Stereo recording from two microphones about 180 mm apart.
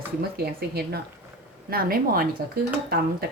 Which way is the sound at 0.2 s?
60° right (ahead or behind).